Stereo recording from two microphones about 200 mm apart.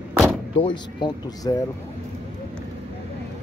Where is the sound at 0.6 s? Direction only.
20° left (ahead or behind).